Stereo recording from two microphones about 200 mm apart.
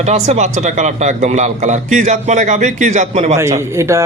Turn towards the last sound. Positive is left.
turn(degrees=-15)  # may be behind; listen again after turning